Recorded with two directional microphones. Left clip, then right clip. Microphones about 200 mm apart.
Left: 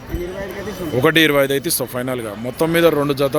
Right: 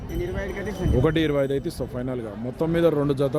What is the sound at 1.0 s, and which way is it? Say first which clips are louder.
Speech: left 10 dB; centre (ahead or behind).